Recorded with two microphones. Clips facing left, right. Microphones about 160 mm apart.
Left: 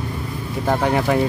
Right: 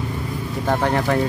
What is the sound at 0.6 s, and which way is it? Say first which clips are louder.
Speech: left 1 dB; 10° left (ahead or behind).